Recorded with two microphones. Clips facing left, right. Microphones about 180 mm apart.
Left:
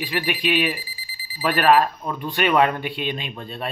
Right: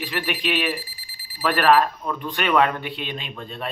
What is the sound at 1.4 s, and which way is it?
Speech, 20° left (ahead or behind).